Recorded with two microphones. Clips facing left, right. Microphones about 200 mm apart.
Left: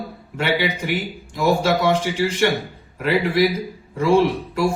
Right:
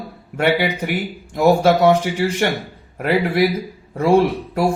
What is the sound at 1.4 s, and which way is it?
Speech, 60° right (ahead or behind).